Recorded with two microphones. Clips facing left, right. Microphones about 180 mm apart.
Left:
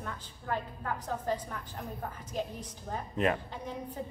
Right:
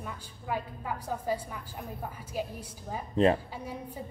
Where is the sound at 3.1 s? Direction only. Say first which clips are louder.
Right 6 dB; 30° right (ahead or behind).